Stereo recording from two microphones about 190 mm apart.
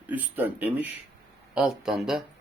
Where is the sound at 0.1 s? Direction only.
10° right (ahead or behind).